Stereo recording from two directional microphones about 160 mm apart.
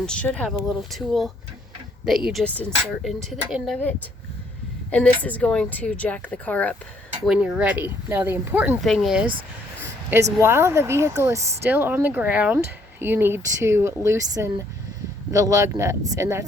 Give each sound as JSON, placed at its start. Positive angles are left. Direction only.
{"t": 0.0, "sound": "speech", "side_deg": 5}
{"t": 4.9, "sound": "speech", "side_deg": 10}
{"t": 7.3, "sound": "speech", "side_deg": -5}
{"t": 8.8, "sound": "speech", "side_deg": 0}
{"t": 9.8, "sound": "a sound", "side_deg": -15}
{"t": 10.4, "sound": "speech", "side_deg": -15}